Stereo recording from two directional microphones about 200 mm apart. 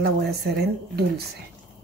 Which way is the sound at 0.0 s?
55° right (ahead or behind).